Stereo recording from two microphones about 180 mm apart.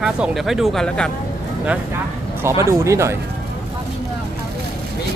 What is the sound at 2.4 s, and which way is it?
Speech, 15° right (ahead or behind).